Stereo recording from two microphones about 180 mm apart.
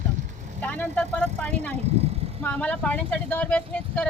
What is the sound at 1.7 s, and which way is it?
Vehicle, 35° right (ahead or behind).